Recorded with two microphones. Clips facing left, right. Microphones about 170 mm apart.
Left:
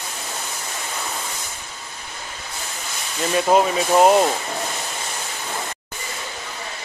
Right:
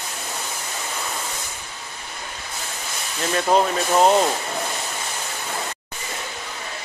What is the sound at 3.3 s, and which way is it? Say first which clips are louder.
Speech: left 2 dB; 5° left (ahead or behind).